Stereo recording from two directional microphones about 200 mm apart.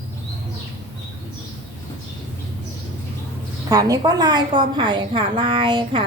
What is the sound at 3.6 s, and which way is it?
A woman's voice, 20° right (ahead or behind).